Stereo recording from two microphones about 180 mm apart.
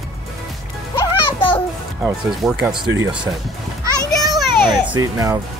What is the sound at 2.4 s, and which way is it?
Speech, 5° right (ahead or behind).